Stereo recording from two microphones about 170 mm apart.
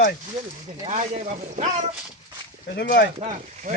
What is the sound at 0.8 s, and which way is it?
Speech, 40° right (ahead or behind).